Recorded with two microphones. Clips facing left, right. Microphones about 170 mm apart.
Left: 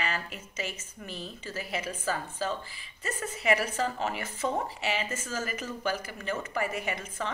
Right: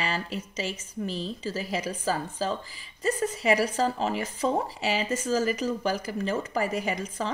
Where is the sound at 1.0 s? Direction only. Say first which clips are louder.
Right 7 dB; 35° right (ahead or behind).